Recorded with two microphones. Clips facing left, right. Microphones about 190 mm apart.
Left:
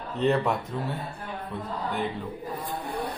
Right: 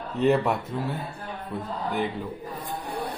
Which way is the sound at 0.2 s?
5° right (ahead or behind).